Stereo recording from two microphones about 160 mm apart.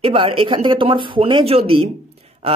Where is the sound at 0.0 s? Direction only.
35° right (ahead or behind).